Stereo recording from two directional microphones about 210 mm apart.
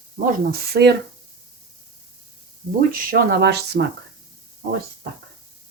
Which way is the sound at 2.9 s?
40° right (ahead or behind).